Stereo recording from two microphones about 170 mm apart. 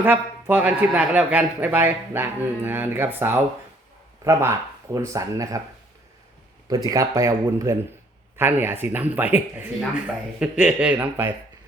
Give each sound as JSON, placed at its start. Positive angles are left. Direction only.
{"t": 0.0, "sound": "a man's voice", "side_deg": -10}
{"t": 6.7, "sound": "a man's voice", "side_deg": -20}